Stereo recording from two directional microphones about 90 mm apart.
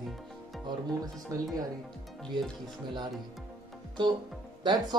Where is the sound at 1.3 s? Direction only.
35° right (ahead or behind).